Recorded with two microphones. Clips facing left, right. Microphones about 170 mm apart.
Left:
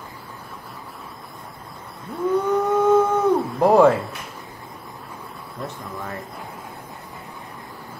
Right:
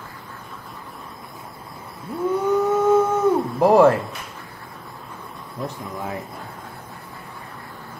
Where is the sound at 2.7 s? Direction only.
5° right (ahead or behind).